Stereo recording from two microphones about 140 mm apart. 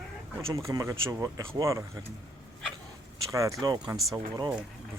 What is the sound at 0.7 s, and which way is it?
Speech, 20° right (ahead or behind).